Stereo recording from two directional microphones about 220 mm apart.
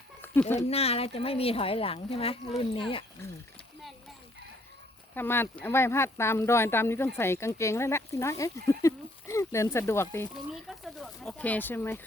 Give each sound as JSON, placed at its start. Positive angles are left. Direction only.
{"t": 0.7, "sound": "a woman's voice", "side_deg": 25}
{"t": 5.1, "sound": "speech", "side_deg": 10}
{"t": 10.5, "sound": "speech", "side_deg": 0}